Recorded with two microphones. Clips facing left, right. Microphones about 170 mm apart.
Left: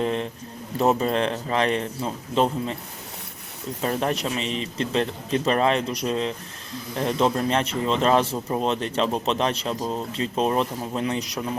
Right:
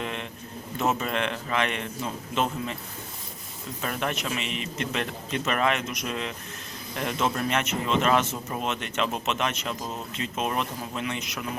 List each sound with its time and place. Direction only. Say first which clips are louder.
0.0 s a man's voice: left 8 dB; 35° left (ahead or behind)
3.8 s speech: left 6 dB; 30° left (ahead or behind)